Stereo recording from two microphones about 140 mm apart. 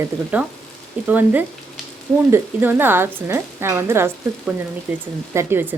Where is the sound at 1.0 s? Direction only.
10° right (ahead or behind).